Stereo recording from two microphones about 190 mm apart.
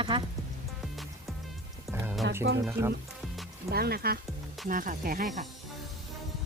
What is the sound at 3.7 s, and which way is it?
Speech, 55° right (ahead or behind).